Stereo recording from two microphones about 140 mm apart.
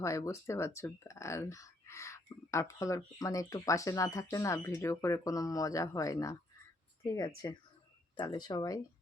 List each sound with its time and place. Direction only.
0.0 s speech: 20° left (ahead or behind)